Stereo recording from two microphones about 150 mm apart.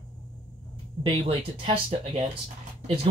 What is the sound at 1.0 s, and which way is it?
A woman's voice, 35° right (ahead or behind).